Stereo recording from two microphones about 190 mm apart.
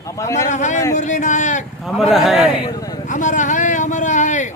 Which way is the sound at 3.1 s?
40° left (ahead or behind).